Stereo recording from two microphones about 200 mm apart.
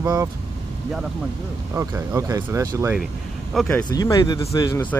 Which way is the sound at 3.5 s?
5° left (ahead or behind).